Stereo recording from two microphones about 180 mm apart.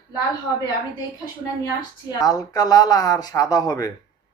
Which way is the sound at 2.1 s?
20° left (ahead or behind).